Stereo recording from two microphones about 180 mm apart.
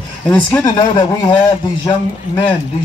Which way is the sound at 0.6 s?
20° left (ahead or behind).